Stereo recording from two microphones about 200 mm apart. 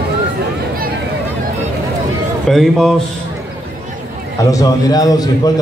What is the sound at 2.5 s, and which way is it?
Speech, centre (ahead or behind).